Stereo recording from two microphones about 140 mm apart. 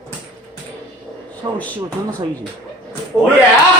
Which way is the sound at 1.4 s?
25° right (ahead or behind).